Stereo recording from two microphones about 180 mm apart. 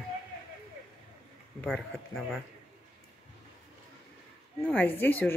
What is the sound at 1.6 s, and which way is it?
Speech, 5° left (ahead or behind).